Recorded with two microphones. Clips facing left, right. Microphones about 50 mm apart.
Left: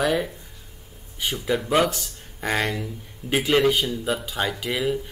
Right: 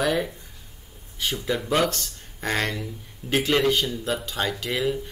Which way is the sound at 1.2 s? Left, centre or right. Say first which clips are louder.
Left 2 dB; centre.